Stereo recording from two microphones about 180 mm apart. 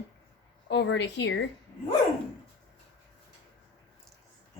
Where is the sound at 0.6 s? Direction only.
75° left (ahead or behind).